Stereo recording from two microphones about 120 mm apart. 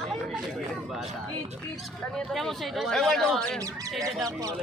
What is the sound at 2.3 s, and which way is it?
Speech, centre (ahead or behind).